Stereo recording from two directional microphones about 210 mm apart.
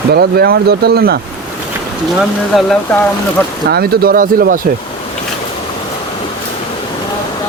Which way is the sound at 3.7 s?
45° right (ahead or behind).